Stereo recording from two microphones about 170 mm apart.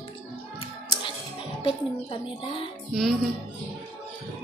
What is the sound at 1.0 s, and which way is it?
Speech, 30° left (ahead or behind).